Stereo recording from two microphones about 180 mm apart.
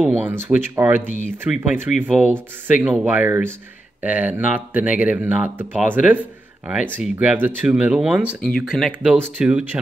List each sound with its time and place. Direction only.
0.0 s speech: 10° right (ahead or behind)